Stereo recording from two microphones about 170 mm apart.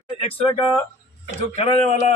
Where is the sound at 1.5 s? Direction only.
40° left (ahead or behind).